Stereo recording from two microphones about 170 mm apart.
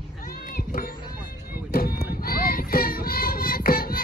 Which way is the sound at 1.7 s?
60° left (ahead or behind).